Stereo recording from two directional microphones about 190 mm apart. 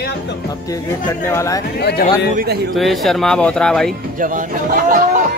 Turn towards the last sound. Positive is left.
turn(degrees=-45)  # may be behind; listen again after turning